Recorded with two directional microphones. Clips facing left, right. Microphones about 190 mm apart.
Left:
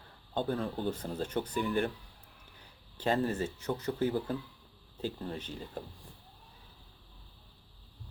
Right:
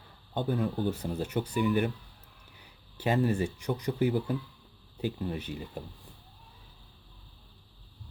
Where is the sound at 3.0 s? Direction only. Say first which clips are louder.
Right 3 dB; 15° right (ahead or behind).